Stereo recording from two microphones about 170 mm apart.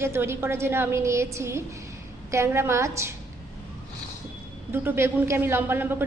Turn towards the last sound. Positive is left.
turn(degrees=-15)  # may be behind; listen again after turning